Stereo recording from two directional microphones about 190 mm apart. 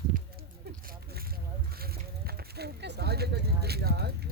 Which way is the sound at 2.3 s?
60° right (ahead or behind).